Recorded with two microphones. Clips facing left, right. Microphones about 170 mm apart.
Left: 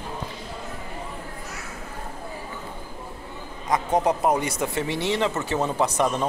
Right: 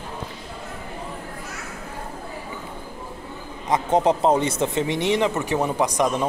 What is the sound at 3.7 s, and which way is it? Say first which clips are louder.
Speech: right 3 dB; 25° right (ahead or behind).